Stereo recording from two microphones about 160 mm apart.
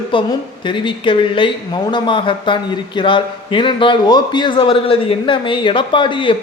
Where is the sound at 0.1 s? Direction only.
30° left (ahead or behind).